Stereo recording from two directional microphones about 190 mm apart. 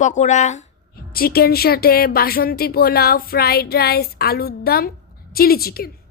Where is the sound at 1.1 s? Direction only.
55° left (ahead or behind).